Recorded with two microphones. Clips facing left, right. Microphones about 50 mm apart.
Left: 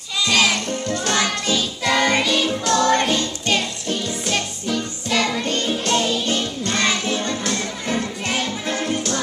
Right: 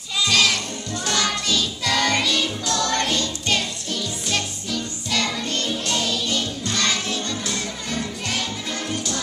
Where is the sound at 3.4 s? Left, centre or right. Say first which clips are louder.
Left 3 dB; centre.